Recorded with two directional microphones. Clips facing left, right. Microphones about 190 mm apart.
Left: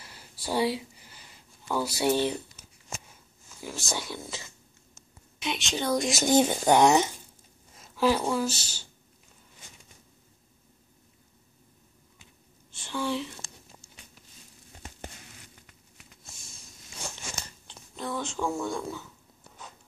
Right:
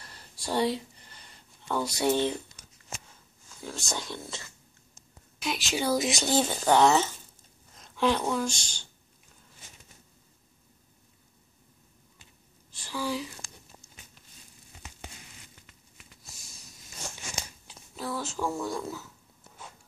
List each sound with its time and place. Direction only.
0.0 s a sound: 5° left (ahead or behind)
3.6 s speech: 5° left (ahead or behind)
6.2 s speech: 15° left (ahead or behind)
12.7 s speech: centre (ahead or behind)
17.4 s speech: 5° right (ahead or behind)